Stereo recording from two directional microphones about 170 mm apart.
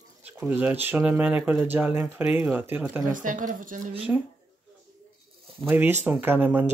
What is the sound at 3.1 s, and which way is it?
Speech, 50° right (ahead or behind).